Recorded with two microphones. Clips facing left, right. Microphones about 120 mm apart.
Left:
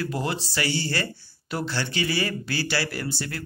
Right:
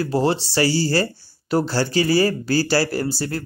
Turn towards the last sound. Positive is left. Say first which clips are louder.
# right 8 dB
turn(degrees=-35)  # may be behind; listen again after turning